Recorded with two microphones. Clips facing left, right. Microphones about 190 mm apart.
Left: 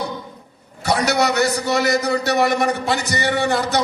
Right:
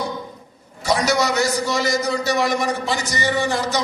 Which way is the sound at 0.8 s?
65° left (ahead or behind).